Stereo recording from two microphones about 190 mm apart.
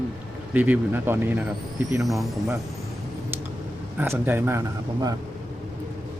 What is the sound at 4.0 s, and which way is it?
Speech, 10° right (ahead or behind).